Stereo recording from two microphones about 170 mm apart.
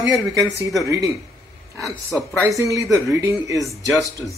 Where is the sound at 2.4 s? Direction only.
20° right (ahead or behind).